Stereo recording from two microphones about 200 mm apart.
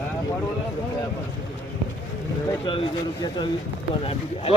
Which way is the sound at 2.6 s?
25° left (ahead or behind).